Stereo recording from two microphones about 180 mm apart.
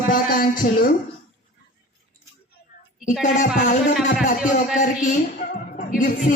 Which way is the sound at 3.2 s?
45° left (ahead or behind).